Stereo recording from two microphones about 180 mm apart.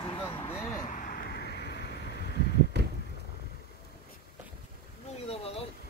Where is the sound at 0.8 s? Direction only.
50° left (ahead or behind); by 1.9 s 70° left (ahead or behind).